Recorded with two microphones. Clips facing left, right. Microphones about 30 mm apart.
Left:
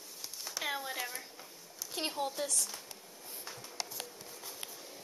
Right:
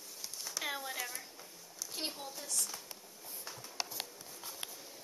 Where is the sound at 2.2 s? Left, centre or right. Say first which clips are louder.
Left 9 dB; left.